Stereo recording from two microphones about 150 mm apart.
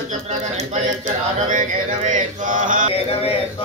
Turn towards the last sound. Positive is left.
turn(degrees=40)  # may be behind; listen again after turning